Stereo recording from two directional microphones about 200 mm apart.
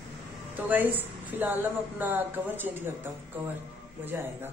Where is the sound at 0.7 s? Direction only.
10° right (ahead or behind).